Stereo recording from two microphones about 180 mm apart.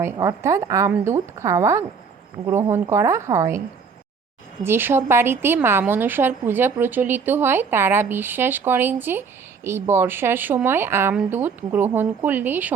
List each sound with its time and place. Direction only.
0.0 s a woman's voice: 15° right (ahead or behind)
4.6 s a woman's voice: 10° right (ahead or behind)